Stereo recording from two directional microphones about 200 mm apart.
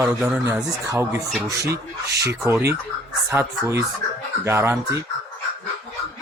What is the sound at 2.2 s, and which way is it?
Speech, 15° right (ahead or behind).